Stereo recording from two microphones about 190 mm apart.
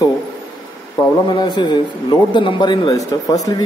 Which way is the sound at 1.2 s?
25° left (ahead or behind).